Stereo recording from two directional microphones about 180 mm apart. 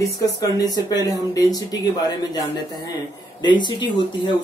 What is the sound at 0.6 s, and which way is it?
Speech, 20° left (ahead or behind).